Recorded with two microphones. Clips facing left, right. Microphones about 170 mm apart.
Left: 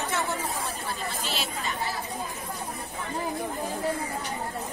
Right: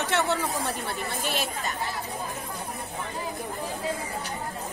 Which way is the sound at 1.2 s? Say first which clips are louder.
Right 3 dB; 55° right (ahead or behind).